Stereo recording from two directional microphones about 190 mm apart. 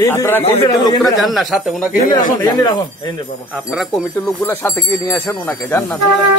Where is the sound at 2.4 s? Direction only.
20° left (ahead or behind).